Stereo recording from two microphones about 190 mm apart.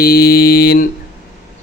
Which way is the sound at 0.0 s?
55° left (ahead or behind).